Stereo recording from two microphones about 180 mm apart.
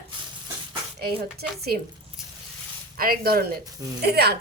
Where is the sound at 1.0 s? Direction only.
60° right (ahead or behind).